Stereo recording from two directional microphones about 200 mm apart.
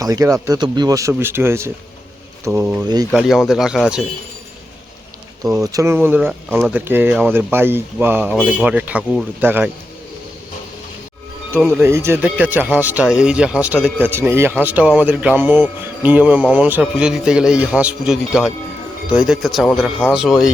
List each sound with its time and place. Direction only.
0.0 s speech: 15° right (ahead or behind)
2.8 s speech: 20° right (ahead or behind)
3.1 s speech: centre (ahead or behind)
5.4 s speech: 15° right (ahead or behind)
11.5 s speech: 10° right (ahead or behind)